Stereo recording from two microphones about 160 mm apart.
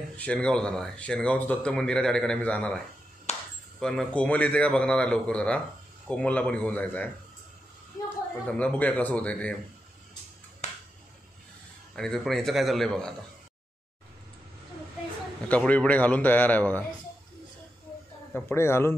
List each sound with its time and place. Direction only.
0.2 s speech: 5° left (ahead or behind)
3.3 s a sound: 45° left (ahead or behind)
3.8 s speech: 5° left (ahead or behind)
8.5 s speech: 10° left (ahead or behind)
10.6 s finger snapping: 45° left (ahead or behind)
11.9 s a man's voice: centre (ahead or behind)
15.4 s speech: 10° left (ahead or behind)
18.3 s speech: 15° left (ahead or behind)